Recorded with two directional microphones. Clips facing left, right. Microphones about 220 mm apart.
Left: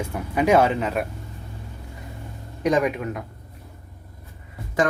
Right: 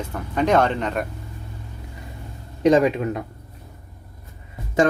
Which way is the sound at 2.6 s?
25° right (ahead or behind).